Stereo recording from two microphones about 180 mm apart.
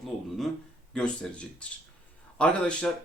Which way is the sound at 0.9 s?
5° left (ahead or behind).